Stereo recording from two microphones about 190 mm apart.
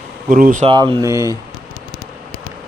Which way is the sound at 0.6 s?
25° right (ahead or behind).